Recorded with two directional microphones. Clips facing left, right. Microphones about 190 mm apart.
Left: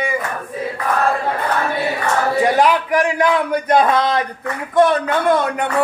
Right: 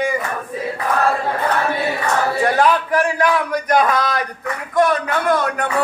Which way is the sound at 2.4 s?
15° left (ahead or behind).